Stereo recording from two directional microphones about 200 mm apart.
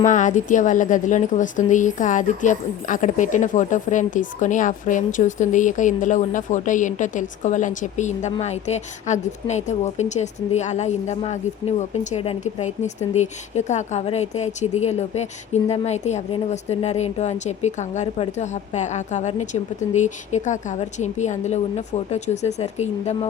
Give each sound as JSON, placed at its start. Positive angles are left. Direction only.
{"t": 0.0, "sound": "a woman's voice", "side_deg": 40}